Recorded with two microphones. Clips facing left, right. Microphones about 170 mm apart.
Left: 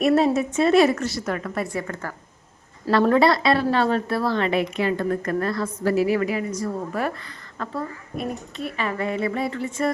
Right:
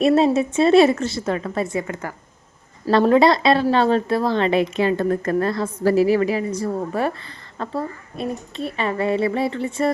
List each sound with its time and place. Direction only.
0.0 s a woman's voice: 25° right (ahead or behind)